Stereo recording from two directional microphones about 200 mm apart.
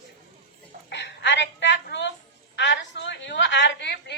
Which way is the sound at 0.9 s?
60° left (ahead or behind).